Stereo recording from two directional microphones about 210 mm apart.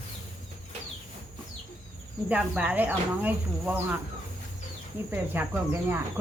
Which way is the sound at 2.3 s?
5° right (ahead or behind).